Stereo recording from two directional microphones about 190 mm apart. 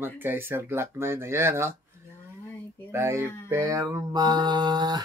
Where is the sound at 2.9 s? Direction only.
15° right (ahead or behind).